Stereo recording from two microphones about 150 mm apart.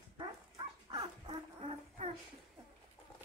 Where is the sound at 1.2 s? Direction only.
40° right (ahead or behind).